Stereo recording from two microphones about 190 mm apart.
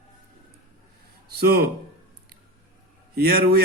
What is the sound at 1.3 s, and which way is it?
Speech, 55° right (ahead or behind).